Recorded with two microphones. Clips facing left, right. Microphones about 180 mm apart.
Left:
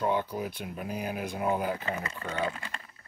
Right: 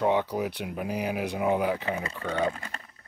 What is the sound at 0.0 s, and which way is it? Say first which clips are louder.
Speech: right 4 dB; 70° right (ahead or behind).